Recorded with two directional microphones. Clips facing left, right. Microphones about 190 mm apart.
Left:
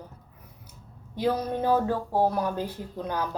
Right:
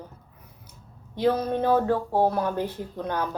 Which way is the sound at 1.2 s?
10° left (ahead or behind).